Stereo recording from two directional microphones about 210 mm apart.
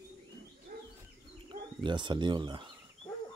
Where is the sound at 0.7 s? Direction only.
45° right (ahead or behind).